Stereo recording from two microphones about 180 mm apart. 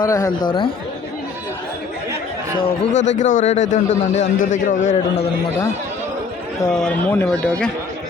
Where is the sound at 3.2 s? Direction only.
45° left (ahead or behind).